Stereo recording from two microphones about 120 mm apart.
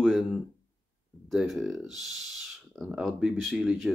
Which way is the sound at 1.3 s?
Centre (ahead or behind).